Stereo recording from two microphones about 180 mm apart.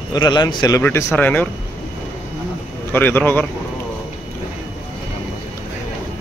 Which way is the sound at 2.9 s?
10° left (ahead or behind).